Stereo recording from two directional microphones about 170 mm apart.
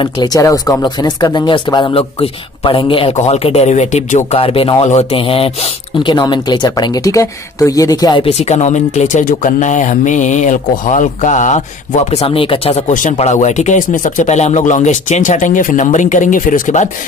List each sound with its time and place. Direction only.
0.0 s speech: 25° left (ahead or behind); by 4.4 s 45° left (ahead or behind)
4.4 s speech: 35° left (ahead or behind)
8.3 s speech: 40° left (ahead or behind)